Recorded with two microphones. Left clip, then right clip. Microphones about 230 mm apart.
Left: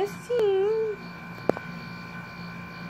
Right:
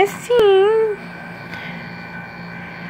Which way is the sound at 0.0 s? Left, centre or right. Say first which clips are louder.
Right 11 dB; centre.